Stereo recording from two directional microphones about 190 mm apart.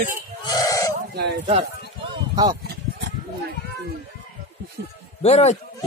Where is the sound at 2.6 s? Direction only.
55° right (ahead or behind).